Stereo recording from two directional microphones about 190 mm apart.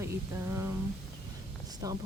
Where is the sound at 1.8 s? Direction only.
15° right (ahead or behind).